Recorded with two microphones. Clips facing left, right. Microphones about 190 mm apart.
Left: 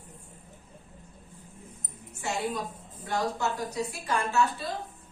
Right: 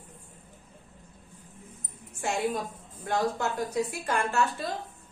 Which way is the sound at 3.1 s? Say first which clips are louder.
Right 1 dB; 55° right (ahead or behind).